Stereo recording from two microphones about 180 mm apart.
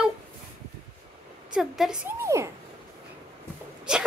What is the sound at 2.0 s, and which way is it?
Speech, 15° right (ahead or behind).